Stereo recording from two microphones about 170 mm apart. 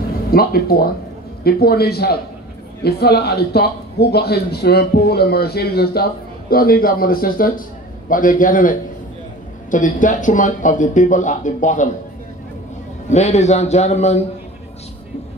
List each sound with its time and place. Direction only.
0.3 s a man's voice: 65° left (ahead or behind); by 11.9 s 45° left (ahead or behind)
13.1 s a man's voice: 40° left (ahead or behind)